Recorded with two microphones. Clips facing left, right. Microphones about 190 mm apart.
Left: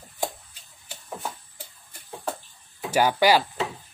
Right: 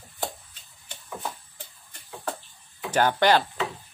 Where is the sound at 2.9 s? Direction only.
10° left (ahead or behind).